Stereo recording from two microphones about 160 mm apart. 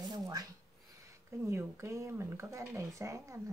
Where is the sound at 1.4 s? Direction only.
15° right (ahead or behind).